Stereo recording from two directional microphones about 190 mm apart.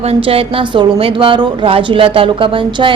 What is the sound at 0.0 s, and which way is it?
A woman's voice, 30° right (ahead or behind).